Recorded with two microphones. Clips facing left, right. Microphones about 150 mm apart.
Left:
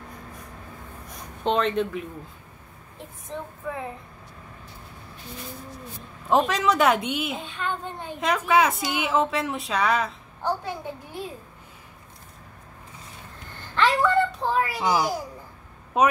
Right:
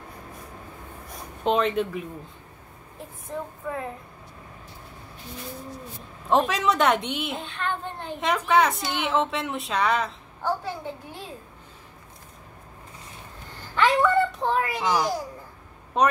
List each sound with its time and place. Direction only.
1.4 s a woman's voice: 5° right (ahead or behind)
3.3 s a woman's voice: centre (ahead or behind)
6.2 s a woman's voice: centre (ahead or behind)
10.4 s a child's voice: 15° left (ahead or behind)
13.7 s a child's voice: centre (ahead or behind)